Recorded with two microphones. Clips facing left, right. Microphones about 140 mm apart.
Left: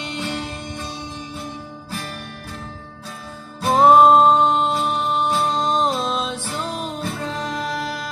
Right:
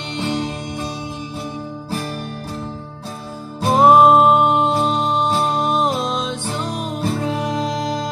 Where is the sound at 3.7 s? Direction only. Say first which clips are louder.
Right 1 dB; centre (ahead or behind).